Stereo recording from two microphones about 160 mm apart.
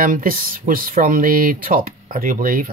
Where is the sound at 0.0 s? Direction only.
60° right (ahead or behind).